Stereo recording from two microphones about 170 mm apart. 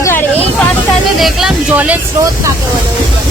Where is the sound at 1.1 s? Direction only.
Centre (ahead or behind).